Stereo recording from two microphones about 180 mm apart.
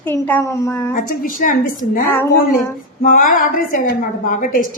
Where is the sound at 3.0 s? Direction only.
50° left (ahead or behind).